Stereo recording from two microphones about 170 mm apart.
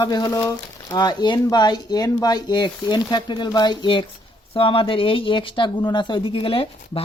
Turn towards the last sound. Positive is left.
turn(degrees=35)  # may be behind; listen again after turning